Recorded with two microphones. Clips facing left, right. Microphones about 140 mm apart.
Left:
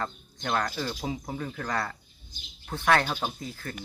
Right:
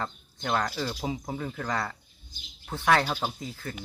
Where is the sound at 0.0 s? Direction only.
5° right (ahead or behind).